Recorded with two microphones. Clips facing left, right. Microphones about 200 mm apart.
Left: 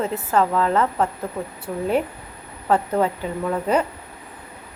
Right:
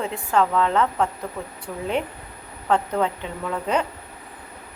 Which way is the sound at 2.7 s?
5° left (ahead or behind).